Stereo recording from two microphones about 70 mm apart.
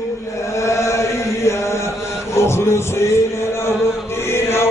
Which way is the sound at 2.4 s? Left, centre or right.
Left.